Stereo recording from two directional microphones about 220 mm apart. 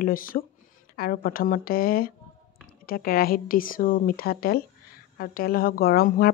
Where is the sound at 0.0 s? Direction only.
40° left (ahead or behind).